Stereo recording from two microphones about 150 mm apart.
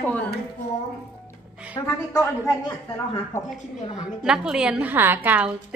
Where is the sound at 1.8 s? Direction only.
25° left (ahead or behind).